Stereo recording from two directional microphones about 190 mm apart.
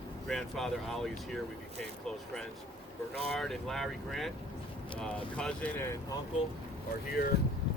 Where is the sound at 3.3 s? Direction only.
Centre (ahead or behind).